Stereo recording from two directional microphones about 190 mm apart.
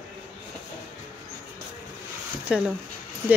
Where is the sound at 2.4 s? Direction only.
5° right (ahead or behind).